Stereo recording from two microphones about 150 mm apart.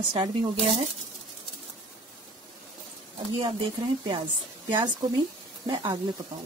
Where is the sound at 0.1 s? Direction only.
30° right (ahead or behind).